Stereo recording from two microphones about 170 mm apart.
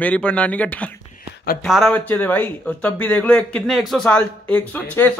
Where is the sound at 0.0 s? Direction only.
5° left (ahead or behind).